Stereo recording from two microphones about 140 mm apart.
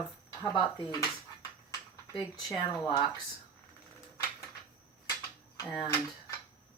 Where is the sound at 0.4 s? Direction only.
30° left (ahead or behind).